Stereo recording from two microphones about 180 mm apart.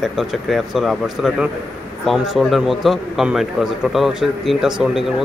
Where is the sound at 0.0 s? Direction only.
Centre (ahead or behind).